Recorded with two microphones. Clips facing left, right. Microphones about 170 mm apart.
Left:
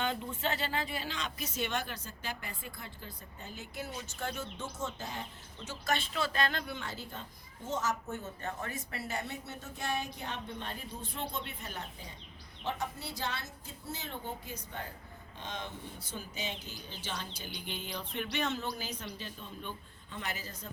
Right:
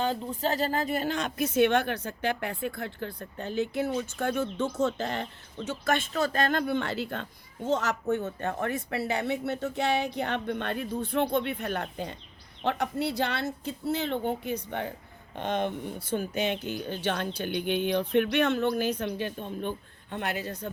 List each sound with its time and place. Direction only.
0.0 s speech: 35° right (ahead or behind); by 20.7 s 65° right (ahead or behind)